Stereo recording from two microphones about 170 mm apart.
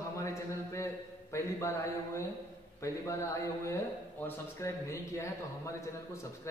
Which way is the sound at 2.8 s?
15° left (ahead or behind).